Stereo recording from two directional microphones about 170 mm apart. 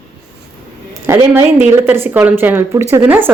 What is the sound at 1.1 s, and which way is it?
A woman's voice, 15° right (ahead or behind).